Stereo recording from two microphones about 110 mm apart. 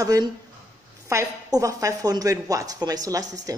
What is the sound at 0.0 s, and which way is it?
A woman's voice, 35° right (ahead or behind).